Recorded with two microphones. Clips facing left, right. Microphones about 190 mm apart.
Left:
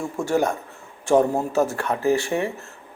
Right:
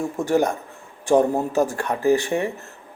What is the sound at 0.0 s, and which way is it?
A man's voice, 20° right (ahead or behind).